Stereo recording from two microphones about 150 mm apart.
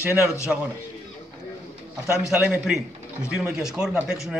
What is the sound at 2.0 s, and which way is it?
Speech, 5° right (ahead or behind).